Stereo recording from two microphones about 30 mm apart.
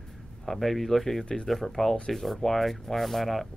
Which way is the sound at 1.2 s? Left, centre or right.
Left.